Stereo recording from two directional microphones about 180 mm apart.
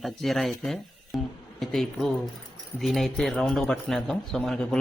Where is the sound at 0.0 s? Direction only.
Centre (ahead or behind).